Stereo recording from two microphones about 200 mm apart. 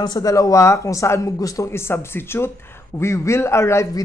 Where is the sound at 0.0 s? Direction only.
20° left (ahead or behind).